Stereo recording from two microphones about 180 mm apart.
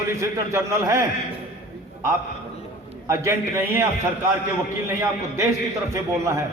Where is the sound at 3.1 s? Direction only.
15° right (ahead or behind).